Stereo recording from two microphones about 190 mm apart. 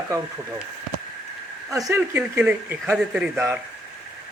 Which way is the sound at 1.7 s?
15° right (ahead or behind).